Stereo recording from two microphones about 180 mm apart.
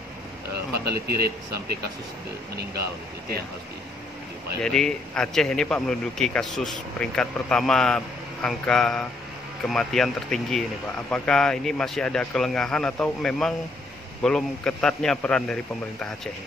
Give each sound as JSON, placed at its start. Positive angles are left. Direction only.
{"t": 0.8, "sound": "speech", "side_deg": -60}
{"t": 4.6, "sound": "a man's voice", "side_deg": 5}